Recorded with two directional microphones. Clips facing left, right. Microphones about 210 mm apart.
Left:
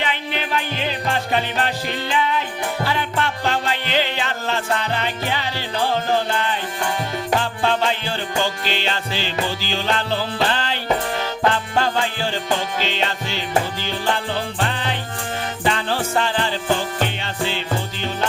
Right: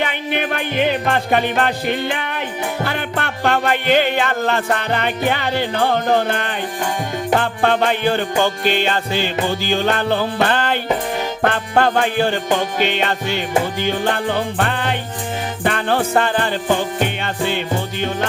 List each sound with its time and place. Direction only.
0.0 s music: 55° right (ahead or behind)